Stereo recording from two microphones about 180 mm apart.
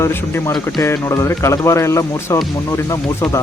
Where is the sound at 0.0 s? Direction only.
15° left (ahead or behind).